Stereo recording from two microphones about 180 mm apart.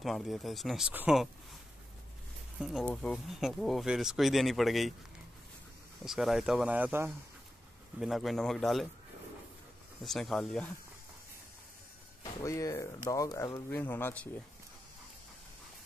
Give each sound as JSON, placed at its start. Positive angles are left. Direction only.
{"t": 0.0, "sound": "speech", "side_deg": 0}
{"t": 2.6, "sound": "speech", "side_deg": 0}
{"t": 6.0, "sound": "speech", "side_deg": 0}
{"t": 8.0, "sound": "speech", "side_deg": 0}
{"t": 10.0, "sound": "speech", "side_deg": 0}
{"t": 12.2, "sound": "speech", "side_deg": 20}